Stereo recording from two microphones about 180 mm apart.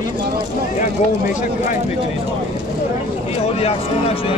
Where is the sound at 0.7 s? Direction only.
45° left (ahead or behind).